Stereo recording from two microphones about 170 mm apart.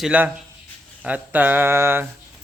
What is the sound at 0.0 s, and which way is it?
Speech, 5° right (ahead or behind).